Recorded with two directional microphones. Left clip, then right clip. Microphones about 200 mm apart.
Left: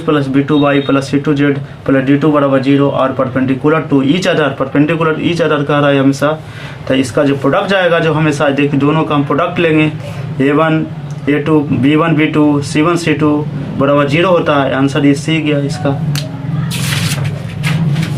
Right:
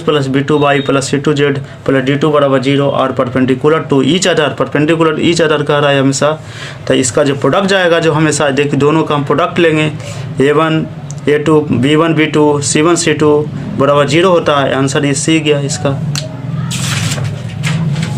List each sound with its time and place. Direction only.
0.0 s speech: 50° right (ahead or behind)